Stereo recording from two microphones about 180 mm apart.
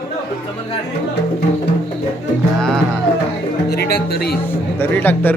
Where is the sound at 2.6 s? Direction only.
5° left (ahead or behind).